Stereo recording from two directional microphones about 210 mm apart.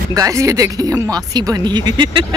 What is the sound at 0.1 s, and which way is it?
Speech, 15° right (ahead or behind).